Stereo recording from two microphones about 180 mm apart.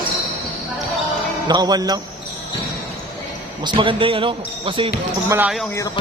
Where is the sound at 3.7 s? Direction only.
30° right (ahead or behind).